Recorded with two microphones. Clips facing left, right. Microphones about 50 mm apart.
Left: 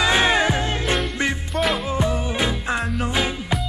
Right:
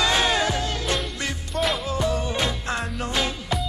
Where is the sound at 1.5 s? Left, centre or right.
Centre.